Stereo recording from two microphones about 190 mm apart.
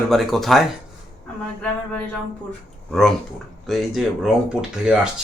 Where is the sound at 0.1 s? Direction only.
Centre (ahead or behind).